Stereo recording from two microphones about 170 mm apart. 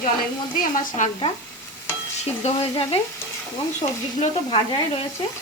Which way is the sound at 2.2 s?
40° left (ahead or behind).